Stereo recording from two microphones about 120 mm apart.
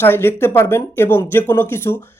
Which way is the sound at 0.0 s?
20° left (ahead or behind).